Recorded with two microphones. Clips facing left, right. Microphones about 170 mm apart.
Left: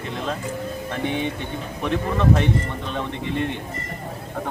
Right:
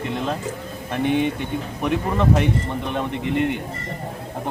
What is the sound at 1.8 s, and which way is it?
Speech, 15° right (ahead or behind).